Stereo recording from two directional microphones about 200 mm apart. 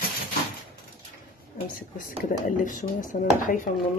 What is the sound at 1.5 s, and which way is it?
Speech, 40° left (ahead or behind).